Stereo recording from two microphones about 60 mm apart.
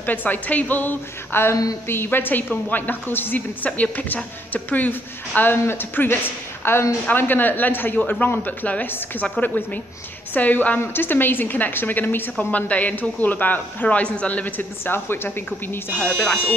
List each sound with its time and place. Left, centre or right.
0.0 s speech: left
1.3 s a woman's voice: left